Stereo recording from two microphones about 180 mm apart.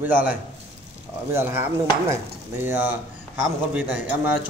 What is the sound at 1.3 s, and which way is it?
A man's voice, 15° right (ahead or behind).